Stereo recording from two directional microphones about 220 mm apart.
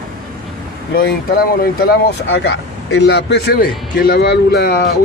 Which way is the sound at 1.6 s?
45° left (ahead or behind).